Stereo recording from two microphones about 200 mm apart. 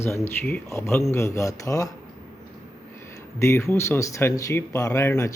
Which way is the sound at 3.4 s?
15° left (ahead or behind).